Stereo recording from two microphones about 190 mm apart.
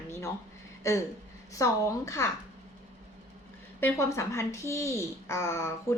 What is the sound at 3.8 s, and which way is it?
Speech, 15° left (ahead or behind).